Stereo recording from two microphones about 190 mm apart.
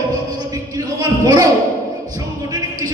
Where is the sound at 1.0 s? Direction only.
20° right (ahead or behind).